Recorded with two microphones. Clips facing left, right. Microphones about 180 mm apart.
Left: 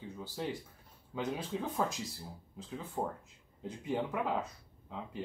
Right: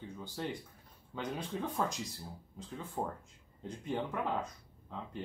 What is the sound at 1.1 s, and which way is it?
Speech, 5° left (ahead or behind).